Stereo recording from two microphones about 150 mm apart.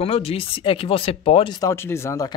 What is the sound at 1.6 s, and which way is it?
Speech, 15° left (ahead or behind).